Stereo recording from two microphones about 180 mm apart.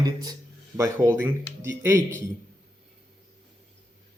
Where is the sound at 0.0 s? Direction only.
20° right (ahead or behind).